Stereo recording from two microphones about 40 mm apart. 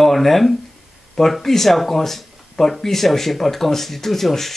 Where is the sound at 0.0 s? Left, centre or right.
Centre.